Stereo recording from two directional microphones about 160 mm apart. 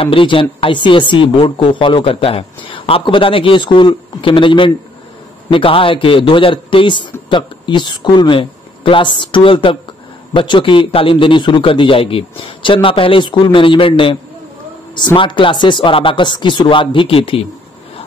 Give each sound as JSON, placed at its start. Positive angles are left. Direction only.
{"t": 0.0, "sound": "speech", "side_deg": 35}